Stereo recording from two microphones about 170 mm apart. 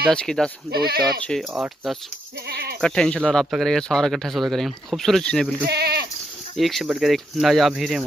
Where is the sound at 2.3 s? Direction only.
70° right (ahead or behind).